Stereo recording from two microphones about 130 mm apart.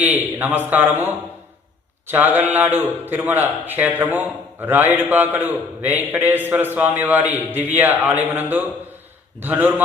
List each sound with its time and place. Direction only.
0.0 s a man's voice: 15° right (ahead or behind)